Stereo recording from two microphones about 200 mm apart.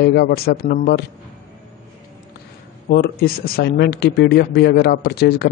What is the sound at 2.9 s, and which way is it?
Speech, 50° left (ahead or behind).